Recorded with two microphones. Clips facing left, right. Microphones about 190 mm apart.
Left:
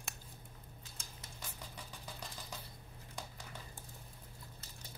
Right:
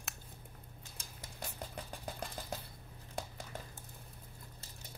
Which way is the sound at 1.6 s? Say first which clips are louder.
Right 6 dB; 60° right (ahead or behind).